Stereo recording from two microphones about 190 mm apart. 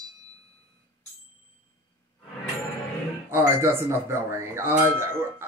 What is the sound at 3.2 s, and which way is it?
Speech, 15° right (ahead or behind).